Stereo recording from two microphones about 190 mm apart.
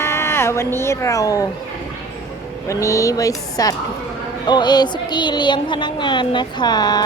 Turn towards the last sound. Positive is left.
turn(degrees=20)  # may be behind; listen again after turning